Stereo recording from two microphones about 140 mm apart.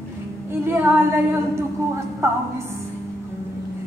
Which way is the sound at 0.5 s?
15° right (ahead or behind).